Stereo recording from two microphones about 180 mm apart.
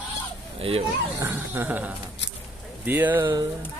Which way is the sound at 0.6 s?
30° right (ahead or behind).